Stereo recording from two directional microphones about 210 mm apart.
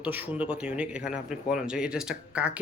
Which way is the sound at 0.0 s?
5° right (ahead or behind).